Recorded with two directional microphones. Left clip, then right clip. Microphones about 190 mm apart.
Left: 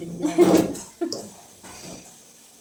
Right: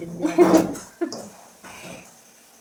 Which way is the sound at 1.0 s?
5° right (ahead or behind).